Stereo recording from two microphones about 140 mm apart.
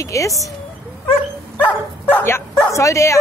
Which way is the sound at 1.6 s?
10° left (ahead or behind).